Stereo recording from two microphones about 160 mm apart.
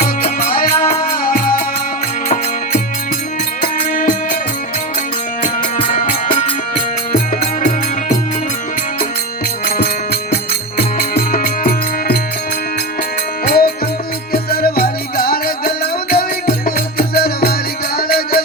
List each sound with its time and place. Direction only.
0.0 s music: 65° left (ahead or behind)
0.7 s music: 40° left (ahead or behind)
1.2 s music: 65° left (ahead or behind)
3.6 s music: 55° left (ahead or behind)
5.9 s music: 55° left (ahead or behind)
9.6 s music: 75° left (ahead or behind)
13.4 s music: 65° left (ahead or behind)